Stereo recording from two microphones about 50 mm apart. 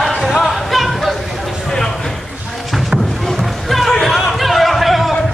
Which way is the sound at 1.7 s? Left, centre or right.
Centre.